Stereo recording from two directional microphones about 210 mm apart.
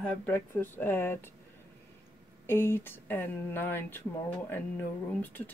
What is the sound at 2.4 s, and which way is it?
Speech, 10° left (ahead or behind).